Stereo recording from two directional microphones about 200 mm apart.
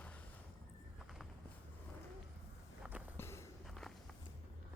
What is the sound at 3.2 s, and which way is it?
Walk, 15° left (ahead or behind).